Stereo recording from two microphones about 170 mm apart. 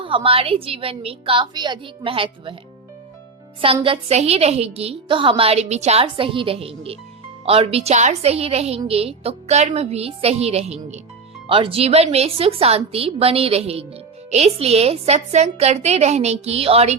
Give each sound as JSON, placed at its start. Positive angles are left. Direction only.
{"t": 0.0, "sound": "a woman's voice", "side_deg": -30}
{"t": 3.6, "sound": "a woman's voice", "side_deg": -30}